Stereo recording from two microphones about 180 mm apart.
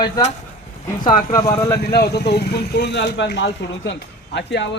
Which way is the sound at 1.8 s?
60° left (ahead or behind).